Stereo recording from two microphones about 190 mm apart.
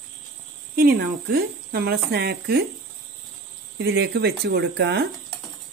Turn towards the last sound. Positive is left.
turn(degrees=-65)  # may be behind; listen again after turning